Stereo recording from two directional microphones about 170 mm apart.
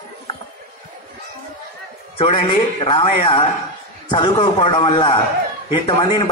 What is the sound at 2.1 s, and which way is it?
A man's voice, 30° left (ahead or behind).